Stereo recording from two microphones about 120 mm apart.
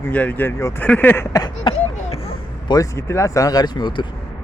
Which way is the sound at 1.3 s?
40° left (ahead or behind).